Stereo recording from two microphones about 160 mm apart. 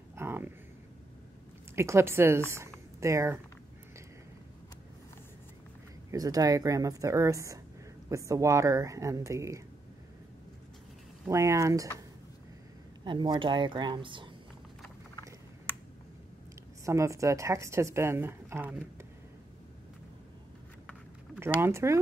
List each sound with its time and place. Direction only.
0.1 s a sound: 15° right (ahead or behind)
1.8 s a woman's voice: 15° right (ahead or behind)
6.1 s a woman's voice: 20° right (ahead or behind)
11.2 s a woman's voice: 20° right (ahead or behind)
13.0 s a woman's voice: 30° right (ahead or behind)
16.8 s a woman's voice: 20° right (ahead or behind)
21.4 s a woman's voice: 15° right (ahead or behind)